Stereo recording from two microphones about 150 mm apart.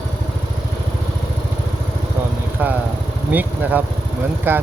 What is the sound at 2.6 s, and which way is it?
Vehicle, 10° right (ahead or behind).